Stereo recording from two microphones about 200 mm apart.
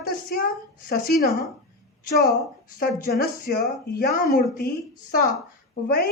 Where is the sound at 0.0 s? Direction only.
45° left (ahead or behind).